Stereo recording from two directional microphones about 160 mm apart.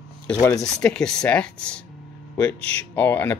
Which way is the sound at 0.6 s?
5° left (ahead or behind).